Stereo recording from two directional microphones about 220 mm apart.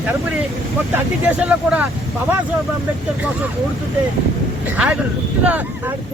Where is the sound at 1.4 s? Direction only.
5° right (ahead or behind).